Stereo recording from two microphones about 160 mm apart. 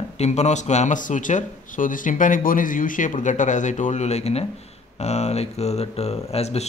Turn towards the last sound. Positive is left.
turn(degrees=40)  # may be behind; listen again after turning